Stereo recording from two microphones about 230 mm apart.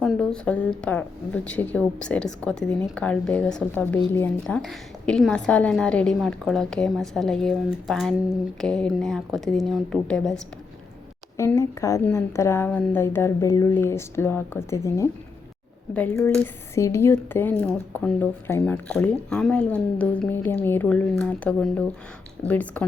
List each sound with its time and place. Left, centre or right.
0.0 s a woman's voice: centre